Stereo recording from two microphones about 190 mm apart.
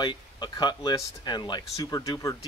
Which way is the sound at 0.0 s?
25° left (ahead or behind).